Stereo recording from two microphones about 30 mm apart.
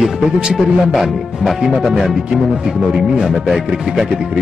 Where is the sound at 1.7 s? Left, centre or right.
Centre.